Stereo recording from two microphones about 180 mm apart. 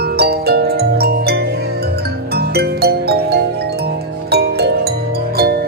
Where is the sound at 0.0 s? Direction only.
60° right (ahead or behind).